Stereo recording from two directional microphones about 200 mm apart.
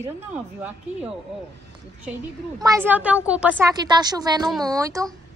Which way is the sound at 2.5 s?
15° right (ahead or behind).